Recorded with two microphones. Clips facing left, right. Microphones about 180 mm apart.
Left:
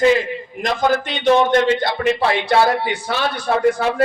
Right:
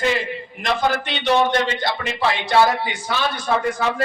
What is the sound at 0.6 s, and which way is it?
A man's voice, 45° left (ahead or behind).